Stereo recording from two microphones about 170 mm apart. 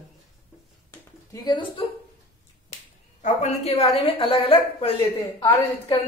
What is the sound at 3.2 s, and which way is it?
A woman's voice, 45° left (ahead or behind).